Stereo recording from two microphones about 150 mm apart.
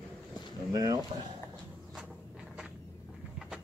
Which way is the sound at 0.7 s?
25° right (ahead or behind).